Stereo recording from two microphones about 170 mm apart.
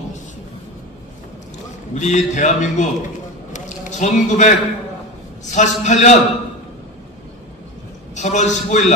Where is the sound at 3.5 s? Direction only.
45° left (ahead or behind).